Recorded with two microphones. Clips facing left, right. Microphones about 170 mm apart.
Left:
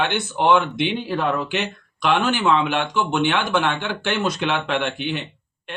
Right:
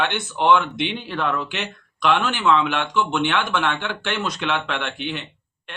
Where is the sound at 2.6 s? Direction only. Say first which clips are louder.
Left 1 dB; 35° left (ahead or behind).